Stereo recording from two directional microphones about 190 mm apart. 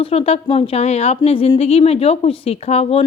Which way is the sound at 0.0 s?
30° left (ahead or behind).